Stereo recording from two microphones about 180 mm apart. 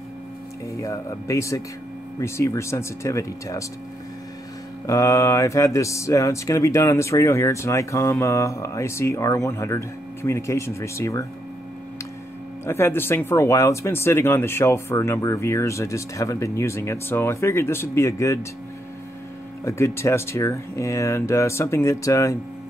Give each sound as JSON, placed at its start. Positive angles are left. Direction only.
{"t": 0.7, "sound": "speech", "side_deg": 15}
{"t": 4.8, "sound": "speech", "side_deg": 20}
{"t": 12.6, "sound": "speech", "side_deg": 15}
{"t": 19.6, "sound": "speech", "side_deg": 15}